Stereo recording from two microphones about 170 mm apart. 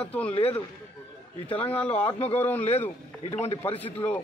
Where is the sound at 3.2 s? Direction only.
35° left (ahead or behind).